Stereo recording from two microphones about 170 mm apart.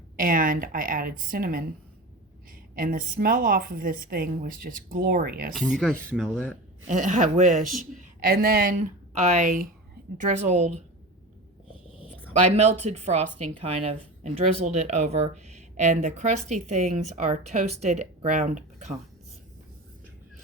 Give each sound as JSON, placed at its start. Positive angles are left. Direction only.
{"t": 0.2, "sound": "a woman's voice", "side_deg": -55}
{"t": 2.7, "sound": "a woman's voice", "side_deg": -55}
{"t": 5.5, "sound": "speech", "side_deg": 0}
{"t": 6.8, "sound": "speech", "side_deg": -45}
{"t": 9.2, "sound": "a woman's voice", "side_deg": -45}
{"t": 12.5, "sound": "a woman's voice", "side_deg": -40}
{"t": 18.3, "sound": "speech", "side_deg": -50}